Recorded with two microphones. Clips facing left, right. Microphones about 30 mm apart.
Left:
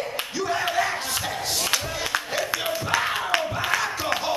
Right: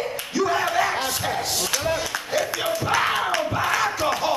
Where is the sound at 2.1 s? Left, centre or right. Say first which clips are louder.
Right 1 dB; centre.